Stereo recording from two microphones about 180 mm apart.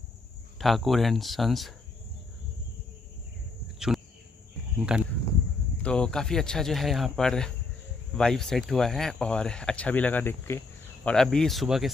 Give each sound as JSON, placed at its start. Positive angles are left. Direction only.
{"t": 0.6, "sound": "speech", "side_deg": 0}
{"t": 4.7, "sound": "speech", "side_deg": -5}
{"t": 5.8, "sound": "speech", "side_deg": 5}